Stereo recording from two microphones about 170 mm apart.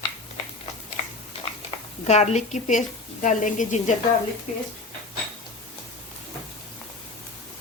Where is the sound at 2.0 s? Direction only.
40° left (ahead or behind).